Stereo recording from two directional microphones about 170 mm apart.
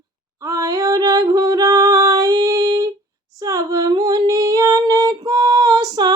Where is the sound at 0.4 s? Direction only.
20° right (ahead or behind).